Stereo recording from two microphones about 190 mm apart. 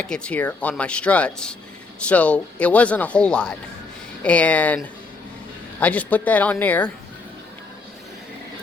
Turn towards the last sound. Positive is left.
turn(degrees=10)  # may be behind; listen again after turning